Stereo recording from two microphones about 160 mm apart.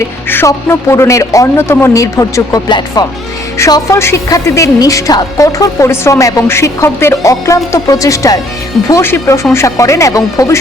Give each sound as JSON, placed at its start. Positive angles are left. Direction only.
{"t": 0.3, "sound": "a woman's voice", "side_deg": 15}